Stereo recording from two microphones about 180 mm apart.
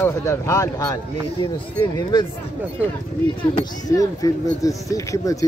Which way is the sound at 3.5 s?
20° left (ahead or behind).